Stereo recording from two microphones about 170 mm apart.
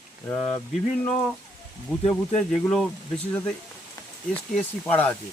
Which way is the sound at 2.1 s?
10° left (ahead or behind).